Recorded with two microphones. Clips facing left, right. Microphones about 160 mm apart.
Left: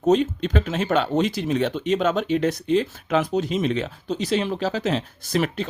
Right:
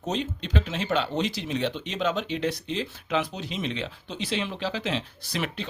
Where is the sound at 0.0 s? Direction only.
50° left (ahead or behind).